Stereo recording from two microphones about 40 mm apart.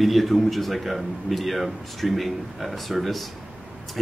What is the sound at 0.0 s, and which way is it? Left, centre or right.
Speech, centre.